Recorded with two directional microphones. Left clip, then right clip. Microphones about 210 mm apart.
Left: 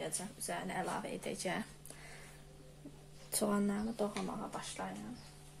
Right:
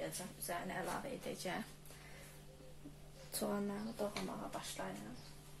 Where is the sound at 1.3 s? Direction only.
30° left (ahead or behind).